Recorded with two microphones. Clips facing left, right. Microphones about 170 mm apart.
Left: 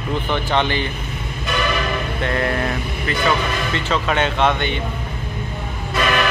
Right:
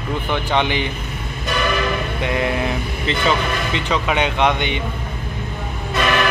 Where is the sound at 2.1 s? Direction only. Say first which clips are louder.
Left 1 dB; 15° right (ahead or behind).